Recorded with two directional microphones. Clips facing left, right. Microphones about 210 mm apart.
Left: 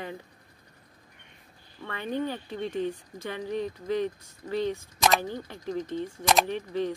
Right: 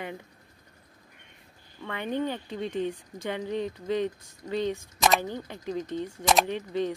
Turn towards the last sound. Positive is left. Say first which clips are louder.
# even
turn(degrees=-15)  # may be behind; listen again after turning